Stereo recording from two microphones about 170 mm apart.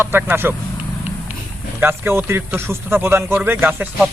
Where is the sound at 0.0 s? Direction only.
10° right (ahead or behind).